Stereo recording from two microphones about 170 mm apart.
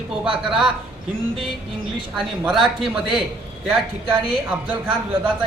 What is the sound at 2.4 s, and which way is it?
Speech, centre (ahead or behind).